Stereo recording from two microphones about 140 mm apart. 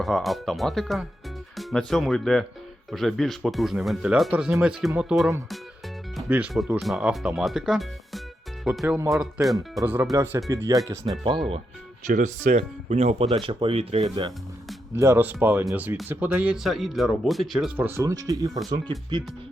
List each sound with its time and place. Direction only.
0.0 s speech: centre (ahead or behind)
6.7 s speech: centre (ahead or behind)
9.8 s speech: 10° right (ahead or behind)
12.0 s speech: 60° right (ahead or behind)
13.2 s speech: 40° right (ahead or behind)
14.9 s speech: 20° right (ahead or behind); by 17.7 s centre (ahead or behind)
17.7 s speech: 15° right (ahead or behind); by 19.2 s 35° right (ahead or behind)